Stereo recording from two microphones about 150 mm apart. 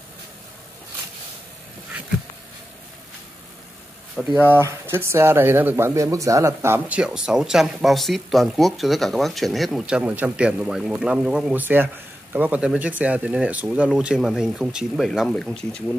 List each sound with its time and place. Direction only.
4.2 s speech: 10° right (ahead or behind); by 15.8 s 5° left (ahead or behind)